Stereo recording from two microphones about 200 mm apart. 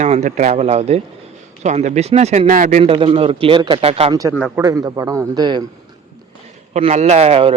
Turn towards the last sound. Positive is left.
turn(degrees=-30)  # may be behind; listen again after turning